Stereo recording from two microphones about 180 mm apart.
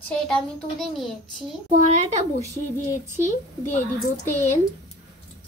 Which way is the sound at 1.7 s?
40° right (ahead or behind).